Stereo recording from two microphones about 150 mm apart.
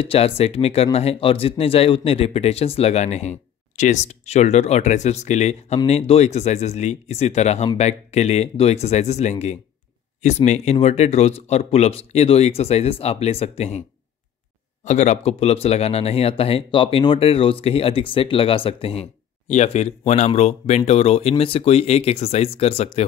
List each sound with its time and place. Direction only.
0.0 s speech: 40° left (ahead or behind)
14.9 s speech: 50° left (ahead or behind)